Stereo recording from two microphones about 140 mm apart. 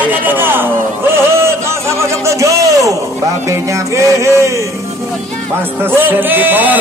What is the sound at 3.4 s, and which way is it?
Music, 20° right (ahead or behind).